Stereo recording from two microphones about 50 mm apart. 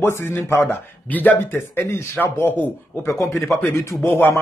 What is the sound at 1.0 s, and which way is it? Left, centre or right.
Speech, left.